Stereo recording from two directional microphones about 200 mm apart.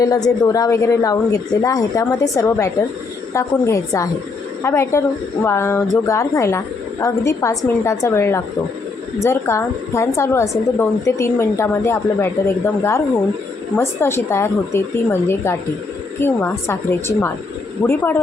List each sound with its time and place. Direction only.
0.0 s a woman's voice: 20° left (ahead or behind)